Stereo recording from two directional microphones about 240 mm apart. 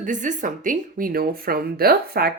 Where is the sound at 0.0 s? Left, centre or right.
Right.